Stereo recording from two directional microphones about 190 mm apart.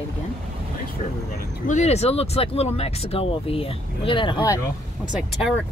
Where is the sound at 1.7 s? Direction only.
35° left (ahead or behind).